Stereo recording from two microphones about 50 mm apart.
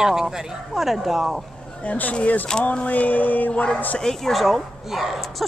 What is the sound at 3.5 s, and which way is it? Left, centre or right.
Speech, left.